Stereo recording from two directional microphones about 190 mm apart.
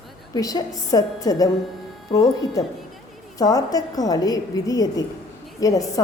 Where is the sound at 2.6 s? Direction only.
20° left (ahead or behind).